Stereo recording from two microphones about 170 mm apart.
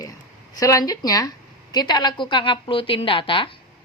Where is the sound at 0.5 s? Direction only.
20° left (ahead or behind).